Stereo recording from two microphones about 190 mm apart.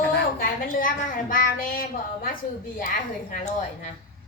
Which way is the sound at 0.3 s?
50° left (ahead or behind).